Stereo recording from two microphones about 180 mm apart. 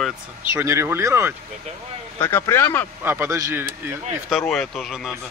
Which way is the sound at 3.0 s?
10° right (ahead or behind).